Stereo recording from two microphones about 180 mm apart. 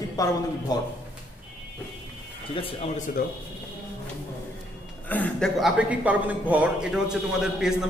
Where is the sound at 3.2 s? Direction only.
55° left (ahead or behind).